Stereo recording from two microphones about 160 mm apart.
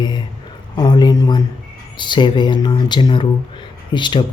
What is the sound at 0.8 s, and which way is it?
Speech, 25° left (ahead or behind).